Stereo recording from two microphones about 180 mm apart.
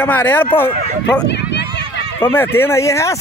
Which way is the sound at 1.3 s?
75° left (ahead or behind).